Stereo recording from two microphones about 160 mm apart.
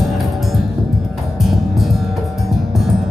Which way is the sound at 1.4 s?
Centre (ahead or behind).